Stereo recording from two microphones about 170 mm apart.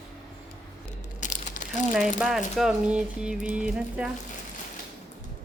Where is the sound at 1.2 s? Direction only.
45° left (ahead or behind).